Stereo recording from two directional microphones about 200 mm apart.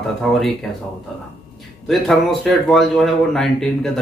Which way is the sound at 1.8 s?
Centre (ahead or behind).